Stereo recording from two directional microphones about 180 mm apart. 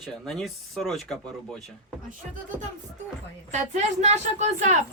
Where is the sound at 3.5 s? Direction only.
40° right (ahead or behind).